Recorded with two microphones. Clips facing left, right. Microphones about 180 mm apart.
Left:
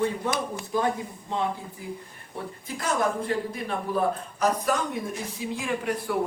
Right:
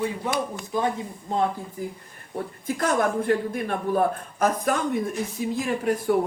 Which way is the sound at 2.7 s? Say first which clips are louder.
Right 3 dB; 55° right (ahead or behind).